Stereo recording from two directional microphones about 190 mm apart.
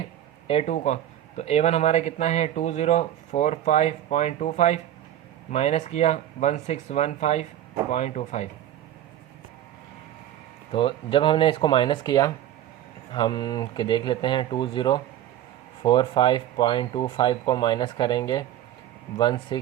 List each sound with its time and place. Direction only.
0.4 s speech: 35° left (ahead or behind)
10.7 s speech: 25° left (ahead or behind)